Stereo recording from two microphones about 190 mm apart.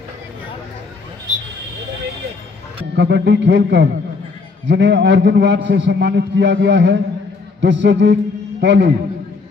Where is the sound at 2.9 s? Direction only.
65° right (ahead or behind).